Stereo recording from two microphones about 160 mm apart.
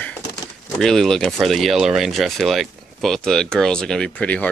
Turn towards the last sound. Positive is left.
turn(degrees=10)  # may be behind; listen again after turning